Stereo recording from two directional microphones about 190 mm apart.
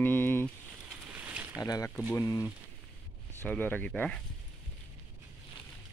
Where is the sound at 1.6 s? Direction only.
20° left (ahead or behind).